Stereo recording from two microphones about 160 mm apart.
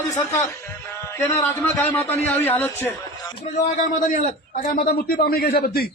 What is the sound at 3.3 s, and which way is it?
A man's voice, 40° left (ahead or behind).